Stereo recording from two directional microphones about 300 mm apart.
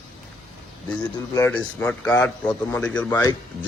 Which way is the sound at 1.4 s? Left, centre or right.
Centre.